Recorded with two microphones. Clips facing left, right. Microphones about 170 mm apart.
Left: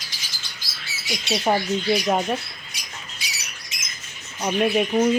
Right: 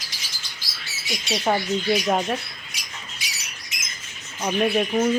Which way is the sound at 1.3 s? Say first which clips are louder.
Left 1 dB; 5° left (ahead or behind).